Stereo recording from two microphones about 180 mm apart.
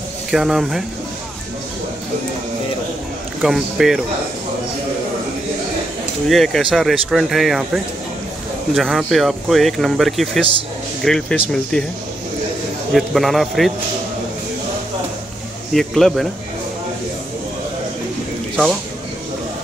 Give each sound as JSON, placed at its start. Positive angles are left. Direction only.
{"t": 0.3, "sound": "speech", "side_deg": 0}
{"t": 3.4, "sound": "speech", "side_deg": 0}
{"t": 6.2, "sound": "speech", "side_deg": 0}
{"t": 12.9, "sound": "speech", "side_deg": 0}
{"t": 15.7, "sound": "speech", "side_deg": 0}